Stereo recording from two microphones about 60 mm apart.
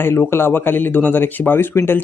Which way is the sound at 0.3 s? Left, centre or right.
Left.